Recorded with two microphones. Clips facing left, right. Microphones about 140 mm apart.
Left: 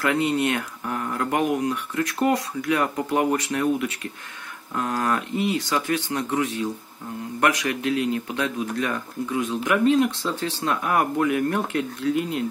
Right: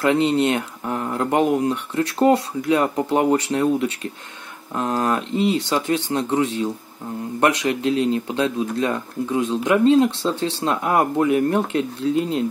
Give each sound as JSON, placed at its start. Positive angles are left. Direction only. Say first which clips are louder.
{"t": 0.0, "sound": "speech", "louder": "right 4 dB", "side_deg": -25}